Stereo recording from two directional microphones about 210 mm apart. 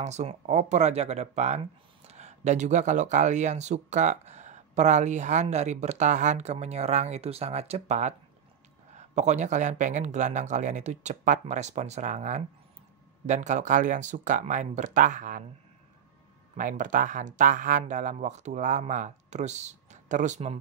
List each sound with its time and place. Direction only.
0.0 s speech: 35° right (ahead or behind)
16.5 s speech: 40° right (ahead or behind)